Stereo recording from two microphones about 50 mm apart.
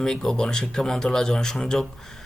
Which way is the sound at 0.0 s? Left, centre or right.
Centre.